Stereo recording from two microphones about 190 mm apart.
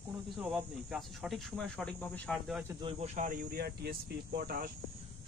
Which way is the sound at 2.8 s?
25° right (ahead or behind).